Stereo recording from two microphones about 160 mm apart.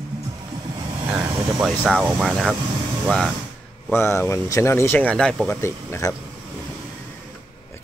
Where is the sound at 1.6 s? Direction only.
Centre (ahead or behind).